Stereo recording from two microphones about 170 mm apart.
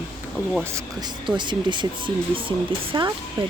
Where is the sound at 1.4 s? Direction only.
25° right (ahead or behind).